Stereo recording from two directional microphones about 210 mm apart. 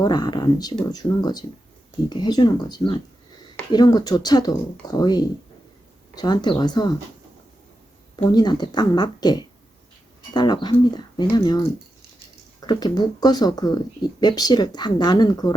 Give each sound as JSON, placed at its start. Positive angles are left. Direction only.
{"t": 0.0, "sound": "speech", "side_deg": 20}
{"t": 8.1, "sound": "speech", "side_deg": 20}